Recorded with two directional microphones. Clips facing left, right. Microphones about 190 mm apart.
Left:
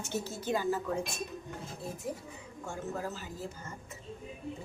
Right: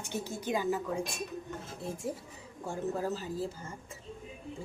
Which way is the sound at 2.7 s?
35° right (ahead or behind).